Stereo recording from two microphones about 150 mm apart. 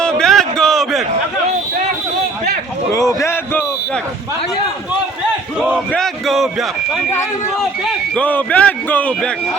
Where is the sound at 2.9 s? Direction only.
20° left (ahead or behind).